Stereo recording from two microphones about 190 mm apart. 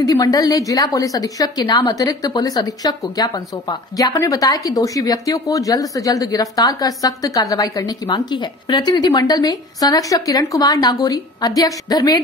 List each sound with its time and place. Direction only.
0.0 s a woman's voice: 20° left (ahead or behind)